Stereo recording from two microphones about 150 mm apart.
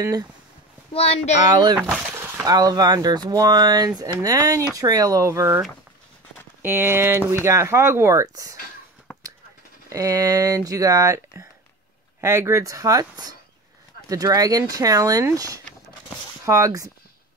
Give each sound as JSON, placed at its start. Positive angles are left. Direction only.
{"t": 0.9, "sound": "speech", "side_deg": 45}
{"t": 1.5, "sound": "speech", "side_deg": -30}
{"t": 1.8, "sound": "a sound", "side_deg": -10}
{"t": 2.4, "sound": "speech", "side_deg": -25}
{"t": 6.6, "sound": "speech", "side_deg": -15}
{"t": 9.8, "sound": "speech", "side_deg": -20}